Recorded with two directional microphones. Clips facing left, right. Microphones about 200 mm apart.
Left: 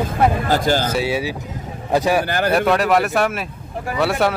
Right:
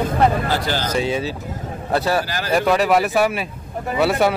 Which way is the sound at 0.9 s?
10° left (ahead or behind).